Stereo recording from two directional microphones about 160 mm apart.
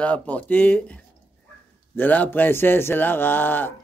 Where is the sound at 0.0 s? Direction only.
10° left (ahead or behind).